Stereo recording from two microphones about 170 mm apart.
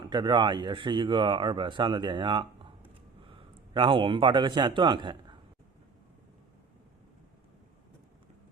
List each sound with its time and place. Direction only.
0.0 s a man's voice: 25° right (ahead or behind)